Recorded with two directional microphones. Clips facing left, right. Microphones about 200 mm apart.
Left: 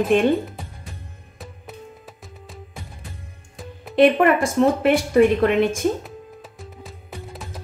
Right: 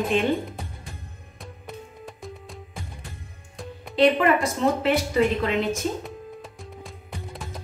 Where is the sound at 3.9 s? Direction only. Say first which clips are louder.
Left 4 dB; 55° left (ahead or behind).